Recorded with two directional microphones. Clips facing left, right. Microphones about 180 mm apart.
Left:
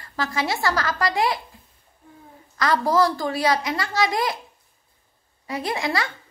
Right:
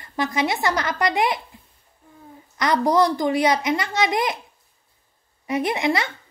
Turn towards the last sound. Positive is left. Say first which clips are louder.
# right 3 dB
turn(degrees=-20)  # may be behind; listen again after turning